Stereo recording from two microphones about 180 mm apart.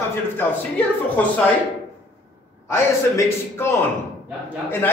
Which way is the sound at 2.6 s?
15° left (ahead or behind).